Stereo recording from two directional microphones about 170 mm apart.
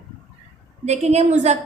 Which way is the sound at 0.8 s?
40° right (ahead or behind).